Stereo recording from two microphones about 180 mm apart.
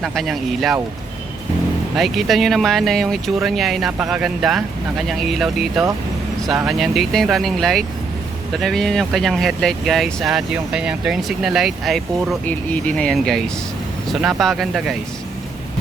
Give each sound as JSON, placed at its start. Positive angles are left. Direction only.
{"t": 0.0, "sound": "speech", "side_deg": 0}
{"t": 2.0, "sound": "speech", "side_deg": 0}